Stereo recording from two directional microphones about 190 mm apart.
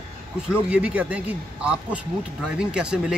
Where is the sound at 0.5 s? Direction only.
5° right (ahead or behind).